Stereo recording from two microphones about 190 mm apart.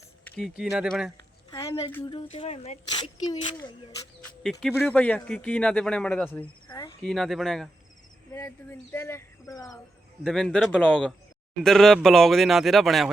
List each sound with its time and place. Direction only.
0.3 s a man's voice: centre (ahead or behind)
2.3 s speech: 30° left (ahead or behind)
4.2 s speech: 5° left (ahead or behind)
6.7 s insect: 25° left (ahead or behind)
7.0 s a man's voice: centre (ahead or behind)
8.3 s speech: 15° left (ahead or behind)
10.2 s a man's voice: 5° left (ahead or behind)